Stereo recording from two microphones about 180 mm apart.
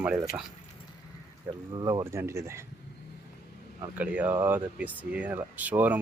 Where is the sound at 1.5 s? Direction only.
25° right (ahead or behind).